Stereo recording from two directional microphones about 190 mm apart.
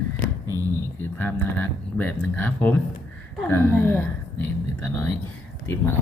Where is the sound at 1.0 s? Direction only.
10° left (ahead or behind).